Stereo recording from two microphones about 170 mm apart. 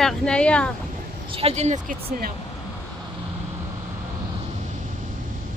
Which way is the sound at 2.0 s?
60° right (ahead or behind).